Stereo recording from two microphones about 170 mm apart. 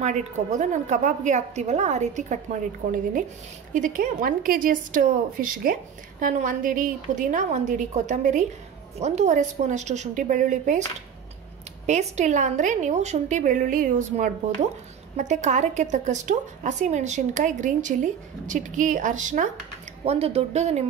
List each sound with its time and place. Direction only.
0.0 s a woman's voice: 45° right (ahead or behind)
3.7 s a woman's voice: 50° right (ahead or behind)
11.8 s a woman's voice: 45° right (ahead or behind)
20.1 s speech: 35° right (ahead or behind)